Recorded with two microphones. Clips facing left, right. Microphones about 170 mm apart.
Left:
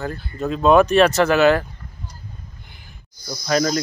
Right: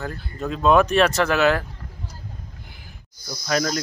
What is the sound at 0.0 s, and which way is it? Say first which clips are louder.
Cricket: left 4 dB; centre (ahead or behind).